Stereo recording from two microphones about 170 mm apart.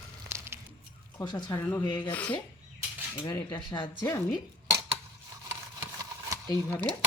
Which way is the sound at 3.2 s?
15° left (ahead or behind).